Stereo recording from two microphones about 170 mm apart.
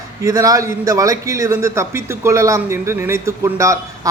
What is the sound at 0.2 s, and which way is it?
A man's voice, 20° right (ahead or behind).